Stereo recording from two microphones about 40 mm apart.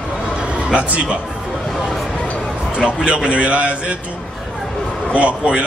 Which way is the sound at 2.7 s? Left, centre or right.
Right.